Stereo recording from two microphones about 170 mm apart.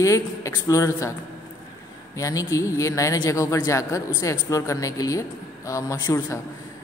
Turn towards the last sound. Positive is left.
turn(degrees=15)  # may be behind; listen again after turning